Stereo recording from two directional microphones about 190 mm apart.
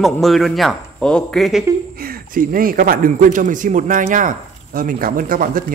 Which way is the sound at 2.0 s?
50° right (ahead or behind).